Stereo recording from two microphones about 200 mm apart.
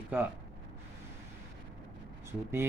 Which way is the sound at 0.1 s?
10° right (ahead or behind).